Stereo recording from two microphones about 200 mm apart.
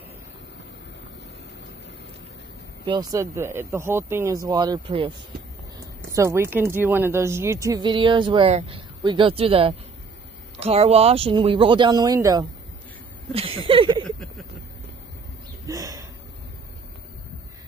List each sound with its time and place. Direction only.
2.8 s speech: 20° right (ahead or behind)
6.1 s a woman's voice: 15° right (ahead or behind)
13.3 s a woman's voice: 30° right (ahead or behind)
15.6 s a sound: 15° right (ahead or behind)